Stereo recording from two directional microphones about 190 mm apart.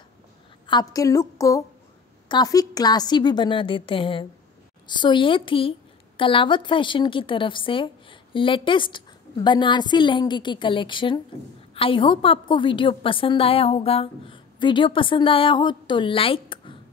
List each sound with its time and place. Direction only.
0.7 s a woman's voice: 20° left (ahead or behind)